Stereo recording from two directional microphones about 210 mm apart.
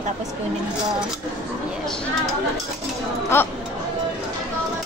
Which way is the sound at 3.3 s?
10° left (ahead or behind).